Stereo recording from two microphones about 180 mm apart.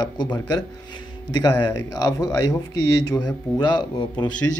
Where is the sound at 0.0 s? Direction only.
25° left (ahead or behind).